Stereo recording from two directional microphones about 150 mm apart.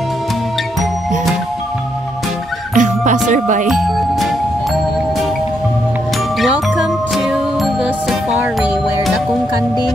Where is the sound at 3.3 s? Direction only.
55° right (ahead or behind).